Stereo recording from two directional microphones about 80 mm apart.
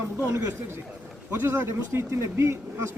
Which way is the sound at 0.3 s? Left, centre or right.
Right.